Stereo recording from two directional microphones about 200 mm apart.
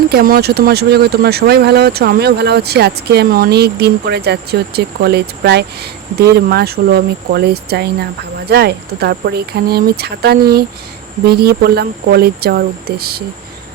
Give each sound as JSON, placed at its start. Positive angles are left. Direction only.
{"t": 0.1, "sound": "speech", "side_deg": -50}